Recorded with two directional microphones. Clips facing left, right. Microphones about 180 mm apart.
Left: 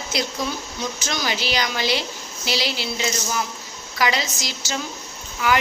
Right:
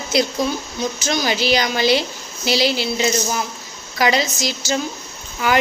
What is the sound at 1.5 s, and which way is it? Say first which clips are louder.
Speech: right 7 dB; 40° right (ahead or behind).